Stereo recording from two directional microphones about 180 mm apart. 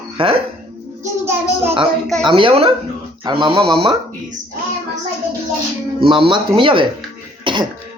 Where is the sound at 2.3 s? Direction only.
30° right (ahead or behind).